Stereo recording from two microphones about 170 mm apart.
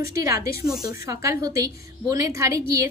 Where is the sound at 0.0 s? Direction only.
20° right (ahead or behind).